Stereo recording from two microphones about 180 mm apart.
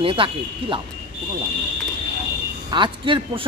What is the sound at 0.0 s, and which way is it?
Speech, 30° right (ahead or behind).